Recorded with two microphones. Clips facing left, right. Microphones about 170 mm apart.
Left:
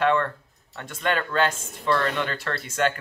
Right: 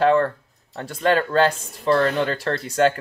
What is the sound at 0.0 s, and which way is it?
Speech, 35° right (ahead or behind).